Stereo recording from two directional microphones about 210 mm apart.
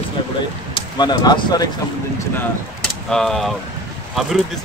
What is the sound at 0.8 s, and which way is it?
Speech, 20° left (ahead or behind).